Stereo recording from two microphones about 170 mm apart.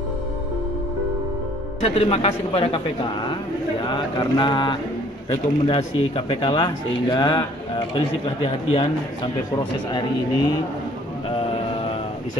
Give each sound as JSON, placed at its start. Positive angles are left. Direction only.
{"t": 1.8, "sound": "a man's voice", "side_deg": 35}